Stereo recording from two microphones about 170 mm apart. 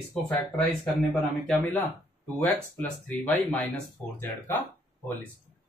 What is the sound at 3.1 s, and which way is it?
Speech, 5° left (ahead or behind).